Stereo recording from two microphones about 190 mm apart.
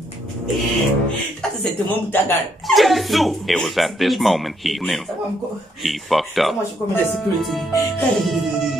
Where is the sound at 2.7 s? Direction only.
Centre (ahead or behind).